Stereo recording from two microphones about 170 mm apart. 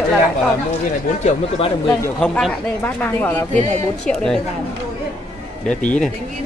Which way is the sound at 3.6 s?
40° right (ahead or behind).